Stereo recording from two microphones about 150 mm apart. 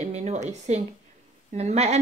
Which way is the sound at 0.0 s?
50° right (ahead or behind).